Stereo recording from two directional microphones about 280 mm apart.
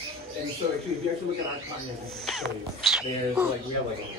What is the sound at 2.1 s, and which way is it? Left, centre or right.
Cat, centre.